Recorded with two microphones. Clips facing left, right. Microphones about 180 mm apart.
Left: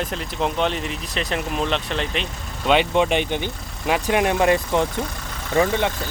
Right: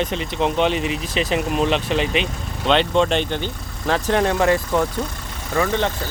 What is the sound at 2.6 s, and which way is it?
Speech, 10° left (ahead or behind).